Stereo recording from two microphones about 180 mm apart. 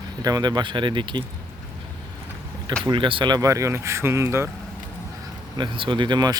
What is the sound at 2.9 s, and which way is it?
Speech, 30° right (ahead or behind).